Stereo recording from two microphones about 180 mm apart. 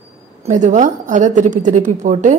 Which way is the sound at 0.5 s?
45° right (ahead or behind).